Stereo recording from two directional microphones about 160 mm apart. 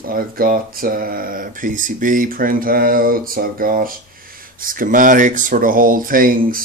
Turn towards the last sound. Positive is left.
turn(degrees=-60)  # may be behind; listen again after turning